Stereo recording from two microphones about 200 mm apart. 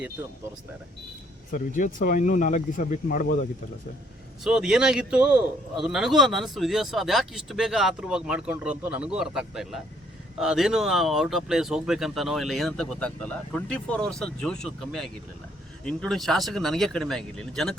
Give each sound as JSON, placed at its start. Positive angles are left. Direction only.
{"t": 1.5, "sound": "speech", "side_deg": 40}
{"t": 4.4, "sound": "a man's voice", "side_deg": -5}